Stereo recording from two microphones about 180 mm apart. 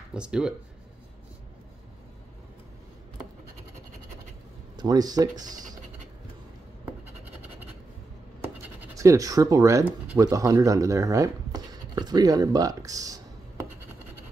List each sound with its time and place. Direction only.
0.1 s speech: 5° right (ahead or behind)
4.7 s speech: 20° right (ahead or behind)
8.9 s speech: 20° right (ahead or behind)